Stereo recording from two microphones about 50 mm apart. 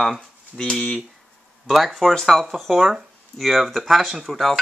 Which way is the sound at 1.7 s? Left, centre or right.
Centre.